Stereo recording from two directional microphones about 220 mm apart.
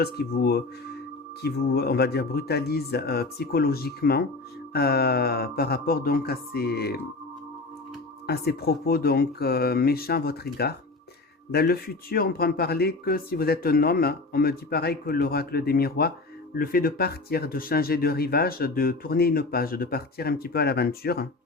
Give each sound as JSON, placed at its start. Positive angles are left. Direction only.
{"t": 0.0, "sound": "speech", "side_deg": 45}
{"t": 8.3, "sound": "speech", "side_deg": 45}